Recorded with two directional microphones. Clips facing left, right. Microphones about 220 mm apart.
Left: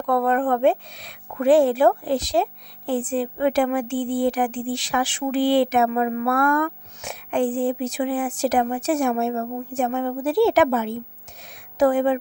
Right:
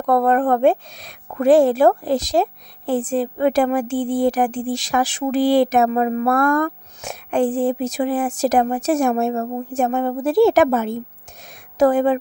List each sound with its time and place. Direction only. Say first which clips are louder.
0.0 s a woman's voice: right 4 dB; 40° right (ahead or behind)